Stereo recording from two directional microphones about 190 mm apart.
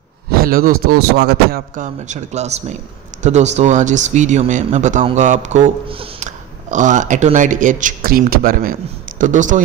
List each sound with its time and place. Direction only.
0.3 s a man's voice: 50° right (ahead or behind)
1.8 s speech: 40° right (ahead or behind)